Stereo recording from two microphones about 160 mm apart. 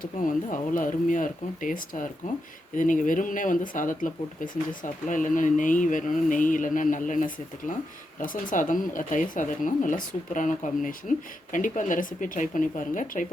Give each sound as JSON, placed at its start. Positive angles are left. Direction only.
{"t": 0.0, "sound": "speech", "side_deg": 55}